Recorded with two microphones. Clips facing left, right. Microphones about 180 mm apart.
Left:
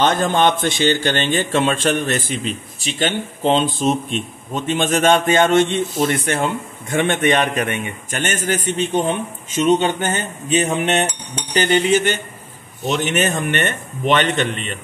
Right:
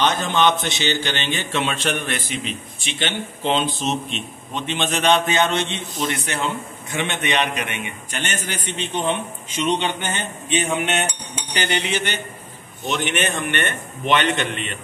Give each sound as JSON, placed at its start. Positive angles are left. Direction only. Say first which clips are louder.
{"t": 0.0, "sound": "a man's voice", "louder": "left 3 dB", "side_deg": 50}